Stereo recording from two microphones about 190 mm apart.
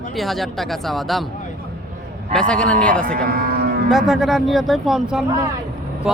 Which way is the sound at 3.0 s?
50° right (ahead or behind).